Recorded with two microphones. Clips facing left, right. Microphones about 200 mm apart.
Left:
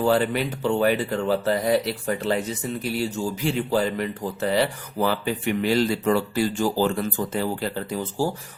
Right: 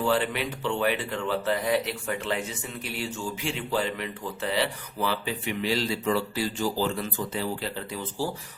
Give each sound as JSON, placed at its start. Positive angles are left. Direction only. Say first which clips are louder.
{"t": 0.0, "sound": "speech", "louder": "left 5 dB", "side_deg": 40}